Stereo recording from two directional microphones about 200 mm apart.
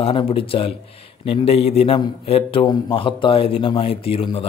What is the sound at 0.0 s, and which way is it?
A man's voice, 25° left (ahead or behind).